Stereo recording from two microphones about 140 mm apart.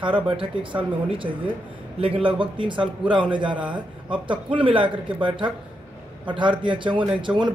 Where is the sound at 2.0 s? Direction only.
40° right (ahead or behind).